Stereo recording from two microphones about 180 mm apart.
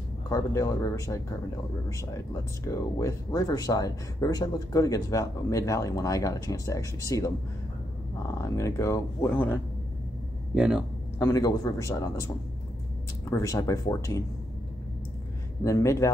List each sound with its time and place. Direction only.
0.3 s speech: 15° left (ahead or behind)
8.4 s speech: 15° left (ahead or behind)
10.5 s speech: 5° right (ahead or behind)
11.1 s speech: 15° left (ahead or behind)
13.3 s speech: 15° left (ahead or behind)
15.6 s speech: 15° left (ahead or behind)